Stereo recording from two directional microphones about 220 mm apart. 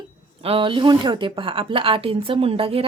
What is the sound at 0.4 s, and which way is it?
Speech, 25° right (ahead or behind).